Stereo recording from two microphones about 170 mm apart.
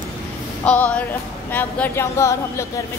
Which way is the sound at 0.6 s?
10° left (ahead or behind).